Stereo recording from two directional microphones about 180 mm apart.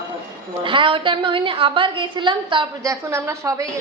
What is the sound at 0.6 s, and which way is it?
A woman's voice, 30° right (ahead or behind).